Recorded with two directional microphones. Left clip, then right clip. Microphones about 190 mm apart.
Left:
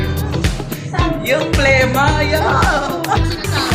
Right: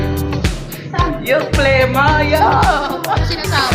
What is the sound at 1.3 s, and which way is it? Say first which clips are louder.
Music: even; 10° left (ahead or behind).